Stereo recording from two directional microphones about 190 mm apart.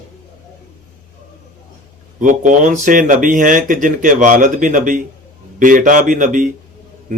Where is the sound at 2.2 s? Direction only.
45° right (ahead or behind).